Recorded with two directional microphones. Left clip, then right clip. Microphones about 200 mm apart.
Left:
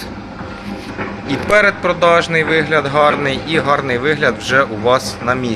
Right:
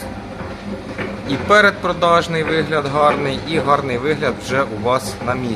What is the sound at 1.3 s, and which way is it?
A man's voice, 10° right (ahead or behind).